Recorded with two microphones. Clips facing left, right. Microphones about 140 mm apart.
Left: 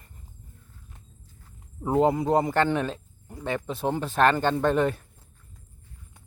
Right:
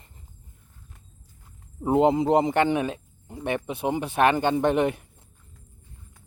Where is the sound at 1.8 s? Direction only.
20° right (ahead or behind).